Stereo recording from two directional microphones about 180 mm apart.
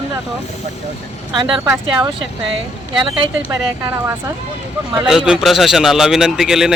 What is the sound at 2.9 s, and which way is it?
Speech, 30° right (ahead or behind).